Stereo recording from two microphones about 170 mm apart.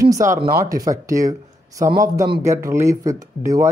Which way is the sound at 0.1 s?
20° right (ahead or behind).